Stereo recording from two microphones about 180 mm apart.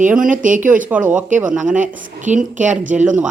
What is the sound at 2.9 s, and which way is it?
Speech, 5° right (ahead or behind).